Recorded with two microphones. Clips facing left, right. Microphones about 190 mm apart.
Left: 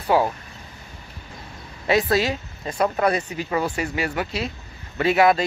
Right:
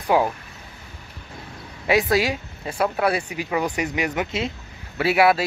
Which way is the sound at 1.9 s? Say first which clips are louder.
Even; 10° right (ahead or behind).